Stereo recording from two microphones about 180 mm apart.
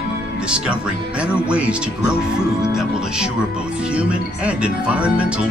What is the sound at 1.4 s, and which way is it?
Speech, 5° right (ahead or behind).